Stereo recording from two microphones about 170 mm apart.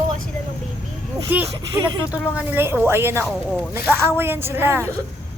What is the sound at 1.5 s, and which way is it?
Speech, 25° right (ahead or behind).